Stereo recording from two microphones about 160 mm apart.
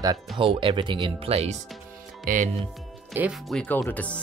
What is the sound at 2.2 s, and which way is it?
Speech, 55° right (ahead or behind).